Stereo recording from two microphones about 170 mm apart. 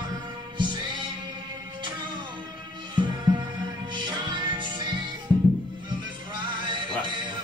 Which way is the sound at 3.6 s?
25° right (ahead or behind).